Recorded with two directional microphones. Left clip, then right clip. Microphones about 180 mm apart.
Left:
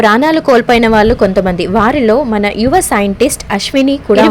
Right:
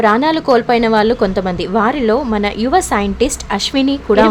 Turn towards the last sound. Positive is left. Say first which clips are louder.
# left 3 dB
turn(degrees=20)  # may be behind; listen again after turning